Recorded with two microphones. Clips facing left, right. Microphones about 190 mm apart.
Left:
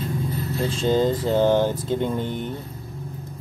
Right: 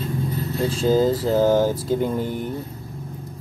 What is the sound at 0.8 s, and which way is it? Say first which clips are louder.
Speech: right 2 dB; 5° right (ahead or behind).